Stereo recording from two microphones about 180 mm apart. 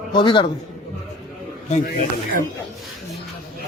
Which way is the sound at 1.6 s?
50° left (ahead or behind).